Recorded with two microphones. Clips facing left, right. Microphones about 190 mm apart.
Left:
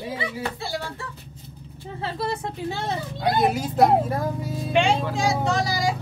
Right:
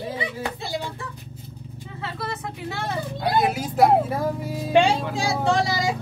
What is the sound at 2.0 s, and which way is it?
Speech, 30° left (ahead or behind).